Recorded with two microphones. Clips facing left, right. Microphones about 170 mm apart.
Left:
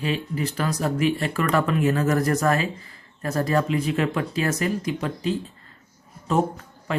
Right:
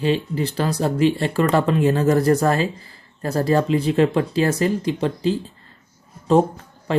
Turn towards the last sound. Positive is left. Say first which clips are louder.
# right 4 dB
turn(degrees=-30)  # may be behind; listen again after turning